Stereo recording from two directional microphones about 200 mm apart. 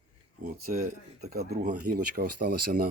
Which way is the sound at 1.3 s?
50° right (ahead or behind).